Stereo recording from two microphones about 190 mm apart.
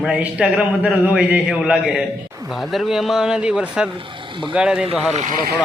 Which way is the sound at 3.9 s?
25° right (ahead or behind).